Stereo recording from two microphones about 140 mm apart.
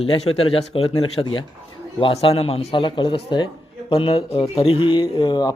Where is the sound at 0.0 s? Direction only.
40° left (ahead or behind).